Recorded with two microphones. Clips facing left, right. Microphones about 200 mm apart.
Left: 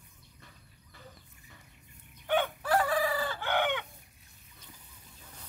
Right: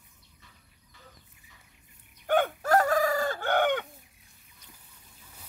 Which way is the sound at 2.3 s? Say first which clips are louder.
Right 4 dB; 45° right (ahead or behind).